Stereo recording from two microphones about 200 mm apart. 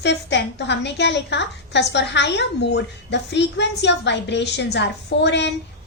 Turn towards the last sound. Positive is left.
turn(degrees=60)  # may be behind; listen again after turning